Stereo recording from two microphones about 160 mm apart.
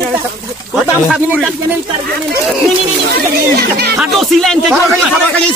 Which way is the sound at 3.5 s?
80° right.